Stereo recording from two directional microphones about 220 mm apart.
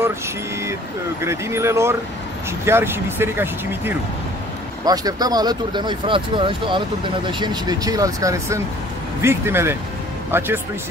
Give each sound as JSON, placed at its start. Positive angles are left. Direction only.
{"t": 1.2, "sound": "speech", "side_deg": -10}